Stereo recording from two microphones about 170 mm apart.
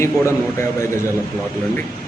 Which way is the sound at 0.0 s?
15° left (ahead or behind).